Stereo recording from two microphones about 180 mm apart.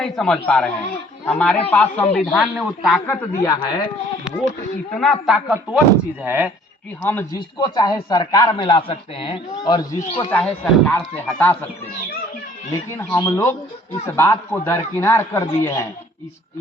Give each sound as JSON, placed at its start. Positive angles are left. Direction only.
{"t": 0.0, "sound": "a man's voice", "side_deg": 5}
{"t": 3.1, "sound": "speech", "side_deg": 20}
{"t": 4.9, "sound": "speech", "side_deg": 0}
{"t": 7.0, "sound": "a man's voice", "side_deg": 10}
{"t": 7.3, "sound": "speech", "side_deg": 25}
{"t": 10.4, "sound": "a man's voice", "side_deg": 10}
{"t": 13.0, "sound": "a man's voice", "side_deg": 15}